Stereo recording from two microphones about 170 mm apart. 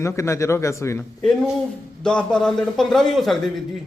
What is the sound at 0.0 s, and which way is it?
A man's voice, 15° left (ahead or behind).